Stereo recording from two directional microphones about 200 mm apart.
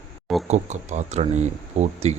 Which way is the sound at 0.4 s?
35° right (ahead or behind).